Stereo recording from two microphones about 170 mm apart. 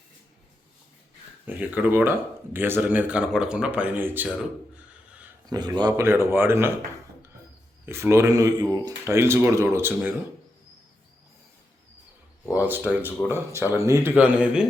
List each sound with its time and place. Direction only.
1.5 s speech: 10° right (ahead or behind)
5.5 s speech: 25° right (ahead or behind)
7.9 s speech: 15° right (ahead or behind)
12.5 s speech: 10° right (ahead or behind)